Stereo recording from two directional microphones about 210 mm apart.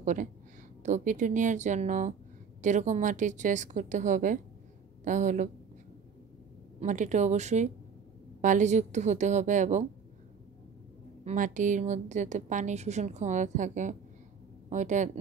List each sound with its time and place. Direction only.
0.0 s a woman's voice: 35° right (ahead or behind)
6.8 s a woman's voice: 35° right (ahead or behind)
11.2 s a woman's voice: 35° right (ahead or behind)